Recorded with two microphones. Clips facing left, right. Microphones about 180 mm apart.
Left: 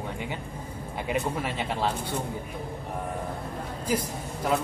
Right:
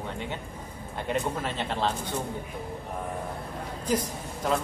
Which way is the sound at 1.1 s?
10° left (ahead or behind).